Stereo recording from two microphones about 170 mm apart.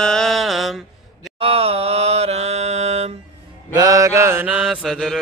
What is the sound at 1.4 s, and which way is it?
Mantra, 35° right (ahead or behind).